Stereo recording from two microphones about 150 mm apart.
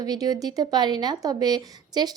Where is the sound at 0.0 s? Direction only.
25° right (ahead or behind).